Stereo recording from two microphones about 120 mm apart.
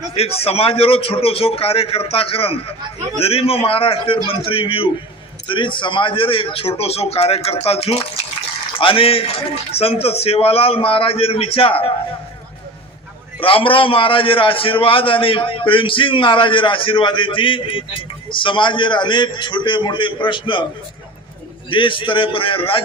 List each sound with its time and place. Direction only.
0.1 s a man's voice: 55° left (ahead or behind)
13.4 s a man's voice: 50° left (ahead or behind)
21.7 s a man's voice: 45° left (ahead or behind)